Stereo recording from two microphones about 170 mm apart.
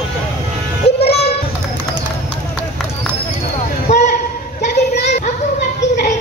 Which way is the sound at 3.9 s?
40° left (ahead or behind).